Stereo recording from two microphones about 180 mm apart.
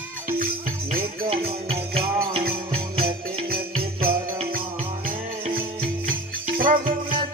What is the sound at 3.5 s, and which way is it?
Music, 55° right (ahead or behind).